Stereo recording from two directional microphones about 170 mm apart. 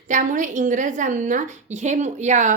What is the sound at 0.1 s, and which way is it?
A woman's voice, 50° right (ahead or behind).